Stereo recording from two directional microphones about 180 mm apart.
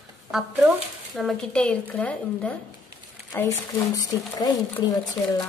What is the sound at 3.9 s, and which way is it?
Speech, 20° left (ahead or behind).